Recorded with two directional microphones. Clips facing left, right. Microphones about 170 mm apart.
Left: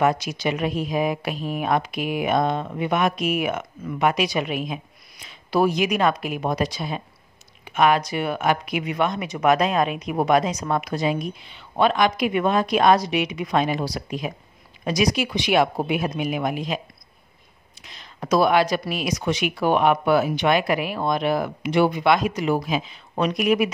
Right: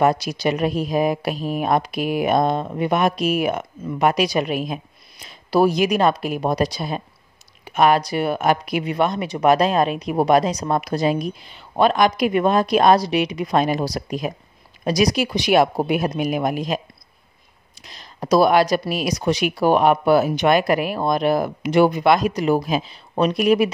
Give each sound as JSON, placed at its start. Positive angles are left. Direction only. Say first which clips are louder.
{"t": 0.0, "sound": "speech", "louder": "right 3 dB", "side_deg": -35}
{"t": 17.8, "sound": "speech", "louder": "right 4 dB", "side_deg": -35}